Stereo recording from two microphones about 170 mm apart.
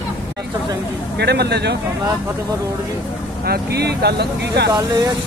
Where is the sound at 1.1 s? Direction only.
75° right (ahead or behind).